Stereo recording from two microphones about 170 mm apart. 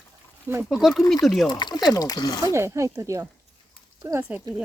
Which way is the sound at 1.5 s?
25° left (ahead or behind).